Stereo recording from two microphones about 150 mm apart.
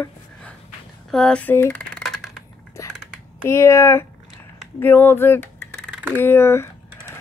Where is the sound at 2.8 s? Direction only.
20° left (ahead or behind).